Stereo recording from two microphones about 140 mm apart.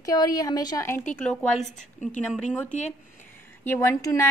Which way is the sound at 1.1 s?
5° left (ahead or behind).